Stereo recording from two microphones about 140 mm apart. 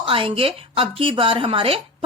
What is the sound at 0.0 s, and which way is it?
Speech, 40° right (ahead or behind).